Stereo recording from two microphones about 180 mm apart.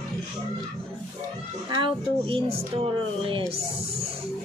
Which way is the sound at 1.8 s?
30° right (ahead or behind).